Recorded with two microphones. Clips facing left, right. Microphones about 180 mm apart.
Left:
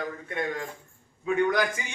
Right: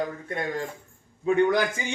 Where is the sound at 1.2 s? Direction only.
30° right (ahead or behind).